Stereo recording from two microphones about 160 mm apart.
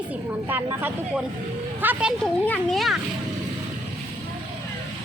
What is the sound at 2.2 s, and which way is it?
Speech, 5° left (ahead or behind).